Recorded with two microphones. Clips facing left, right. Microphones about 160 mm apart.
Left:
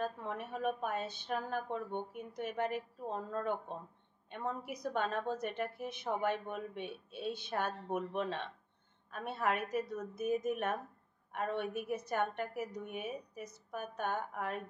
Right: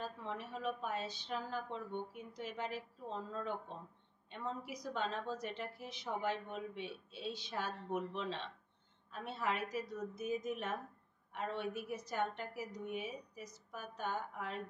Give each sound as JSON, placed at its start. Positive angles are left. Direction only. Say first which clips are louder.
{"t": 0.0, "sound": "a woman's voice", "louder": "left 5 dB", "side_deg": 55}